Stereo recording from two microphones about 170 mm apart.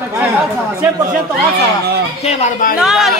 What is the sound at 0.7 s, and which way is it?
Speech, 15° right (ahead or behind).